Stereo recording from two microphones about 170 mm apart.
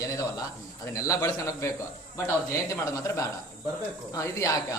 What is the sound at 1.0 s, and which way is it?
A man's voice, 20° left (ahead or behind).